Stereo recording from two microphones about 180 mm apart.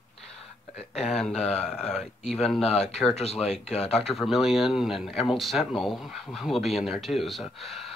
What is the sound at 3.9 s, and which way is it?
Speech, centre (ahead or behind).